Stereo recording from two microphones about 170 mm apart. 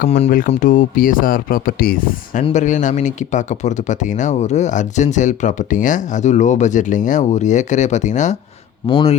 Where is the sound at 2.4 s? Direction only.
45° left (ahead or behind).